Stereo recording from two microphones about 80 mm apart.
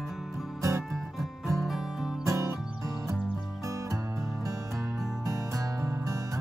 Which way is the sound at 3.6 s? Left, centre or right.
Right.